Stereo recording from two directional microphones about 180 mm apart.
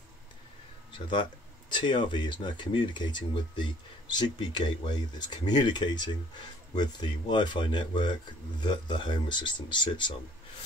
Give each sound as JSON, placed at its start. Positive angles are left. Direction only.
{"t": 0.9, "sound": "speech", "side_deg": 25}